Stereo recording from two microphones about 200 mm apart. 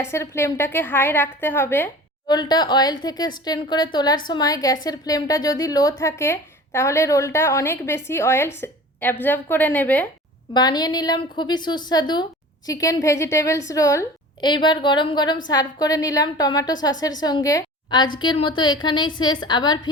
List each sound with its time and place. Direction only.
0.0 s a woman's voice: 15° left (ahead or behind)
10.5 s a woman's voice: 20° left (ahead or behind)